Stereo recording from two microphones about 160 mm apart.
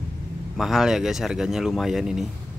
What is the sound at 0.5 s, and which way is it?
Speech, centre (ahead or behind).